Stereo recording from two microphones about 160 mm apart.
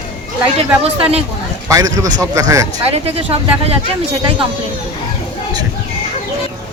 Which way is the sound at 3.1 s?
35° right (ahead or behind).